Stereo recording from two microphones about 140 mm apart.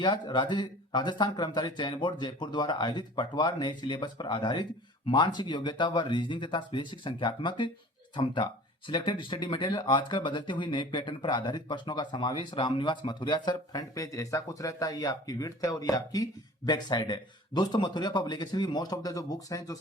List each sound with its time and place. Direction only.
0.0 s speech: 35° left (ahead or behind)